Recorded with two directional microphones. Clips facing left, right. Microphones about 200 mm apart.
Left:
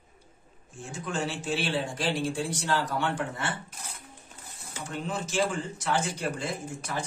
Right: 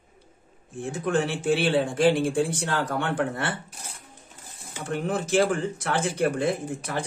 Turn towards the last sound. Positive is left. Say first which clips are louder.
# right 5 dB
turn(degrees=-55)  # may be behind; listen again after turning